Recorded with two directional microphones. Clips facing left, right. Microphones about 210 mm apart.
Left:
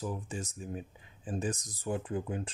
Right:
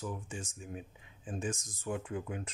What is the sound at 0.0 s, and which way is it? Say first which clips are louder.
Speech: left 3 dB; 35° left (ahead or behind).